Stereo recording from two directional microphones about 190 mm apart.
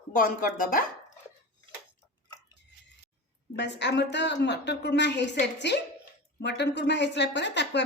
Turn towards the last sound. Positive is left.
turn(degrees=65)  # may be behind; listen again after turning